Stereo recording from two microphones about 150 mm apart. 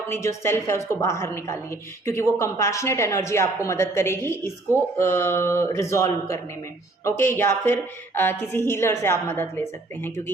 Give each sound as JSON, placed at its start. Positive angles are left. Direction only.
{"t": 0.1, "sound": "a woman's voice", "side_deg": 15}